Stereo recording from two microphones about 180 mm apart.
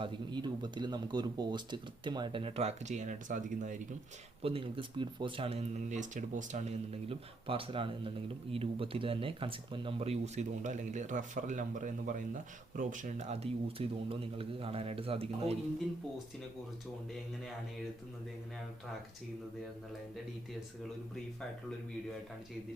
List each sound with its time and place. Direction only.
0.0 s speech: 25° right (ahead or behind); by 3.8 s 45° right (ahead or behind)
4.4 s speech: 30° right (ahead or behind)